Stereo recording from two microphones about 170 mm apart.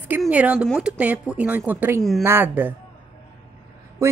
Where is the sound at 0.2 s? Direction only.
10° right (ahead or behind).